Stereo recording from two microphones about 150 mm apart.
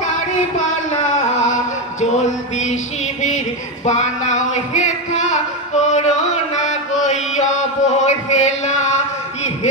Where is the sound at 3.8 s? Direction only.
50° left (ahead or behind).